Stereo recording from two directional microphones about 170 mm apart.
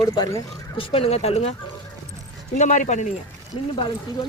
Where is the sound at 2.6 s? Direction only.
45° left (ahead or behind).